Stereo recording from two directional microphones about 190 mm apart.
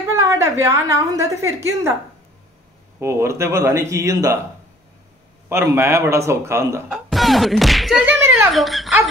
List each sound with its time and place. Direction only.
0.1 s a woman's voice: 15° right (ahead or behind)
3.0 s a man's voice: 15° right (ahead or behind)
5.5 s a man's voice: 15° right (ahead or behind)
7.1 s speech: centre (ahead or behind)
8.5 s speech: centre (ahead or behind)